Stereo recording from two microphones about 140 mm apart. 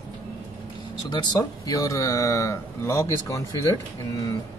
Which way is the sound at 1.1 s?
30° left (ahead or behind).